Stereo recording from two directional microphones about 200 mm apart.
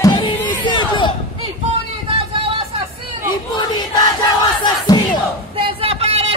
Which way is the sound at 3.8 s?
20° left (ahead or behind).